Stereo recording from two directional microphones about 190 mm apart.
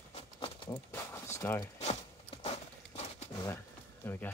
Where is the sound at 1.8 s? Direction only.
35° left (ahead or behind).